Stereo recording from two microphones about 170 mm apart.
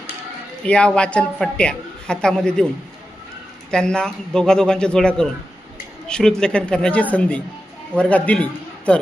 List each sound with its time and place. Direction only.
0.7 s a man's voice: 5° left (ahead or behind)
3.7 s a man's voice: 5° left (ahead or behind)